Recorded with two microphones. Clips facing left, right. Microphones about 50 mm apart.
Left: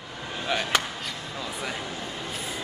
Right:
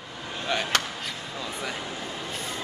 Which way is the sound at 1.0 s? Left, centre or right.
Centre.